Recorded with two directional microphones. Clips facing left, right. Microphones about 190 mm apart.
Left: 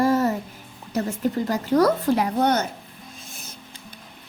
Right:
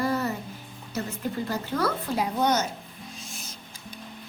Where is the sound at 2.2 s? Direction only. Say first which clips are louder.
Left 3 dB; 60° left (ahead or behind).